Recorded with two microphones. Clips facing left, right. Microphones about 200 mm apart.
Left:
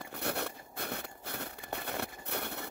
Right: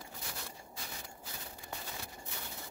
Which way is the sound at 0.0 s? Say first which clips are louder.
Left 11 dB; 65° left (ahead or behind).